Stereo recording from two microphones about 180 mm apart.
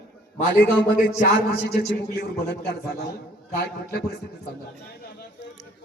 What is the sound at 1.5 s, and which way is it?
A man's voice, 60° left (ahead or behind).